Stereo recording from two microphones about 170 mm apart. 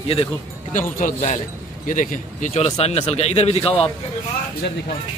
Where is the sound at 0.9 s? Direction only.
45° left (ahead or behind).